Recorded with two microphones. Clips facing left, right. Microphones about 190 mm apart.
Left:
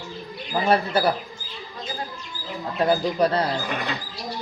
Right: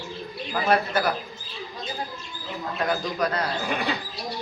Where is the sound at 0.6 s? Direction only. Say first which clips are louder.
Left 2 dB; 30° left (ahead or behind).